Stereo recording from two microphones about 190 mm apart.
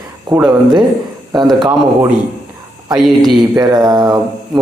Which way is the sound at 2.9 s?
Centre (ahead or behind).